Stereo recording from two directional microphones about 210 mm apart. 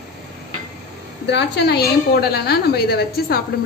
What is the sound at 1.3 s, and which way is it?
A woman's voice, 55° left (ahead or behind).